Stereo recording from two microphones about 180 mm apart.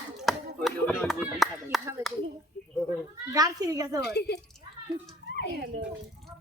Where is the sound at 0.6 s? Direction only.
Centre (ahead or behind).